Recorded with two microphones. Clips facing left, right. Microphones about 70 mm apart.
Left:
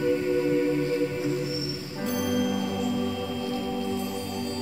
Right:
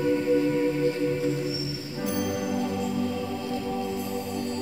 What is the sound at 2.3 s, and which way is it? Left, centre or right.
Music, right.